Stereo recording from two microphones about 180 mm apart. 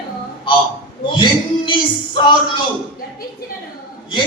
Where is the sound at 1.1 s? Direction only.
25° left (ahead or behind).